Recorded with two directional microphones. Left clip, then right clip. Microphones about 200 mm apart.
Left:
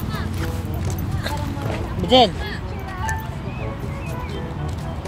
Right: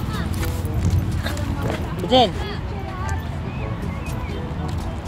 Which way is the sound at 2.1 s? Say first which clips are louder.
Left 2 dB; 25° left (ahead or behind).